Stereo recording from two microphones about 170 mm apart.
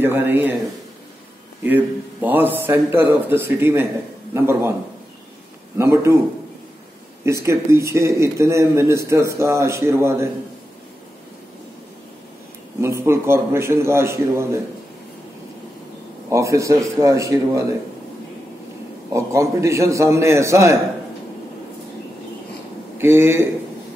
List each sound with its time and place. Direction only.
0.0 s a man's voice: 15° right (ahead or behind)
2.2 s a man's voice: 10° right (ahead or behind)
5.8 s a man's voice: 15° right (ahead or behind)
7.2 s a man's voice: 15° right (ahead or behind)
12.8 s a man's voice: 15° right (ahead or behind)
16.3 s a man's voice: 20° right (ahead or behind)
19.1 s a man's voice: 15° right (ahead or behind)
22.9 s a man's voice: 15° right (ahead or behind)